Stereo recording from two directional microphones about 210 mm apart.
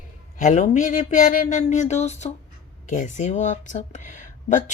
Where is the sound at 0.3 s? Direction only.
35° left (ahead or behind).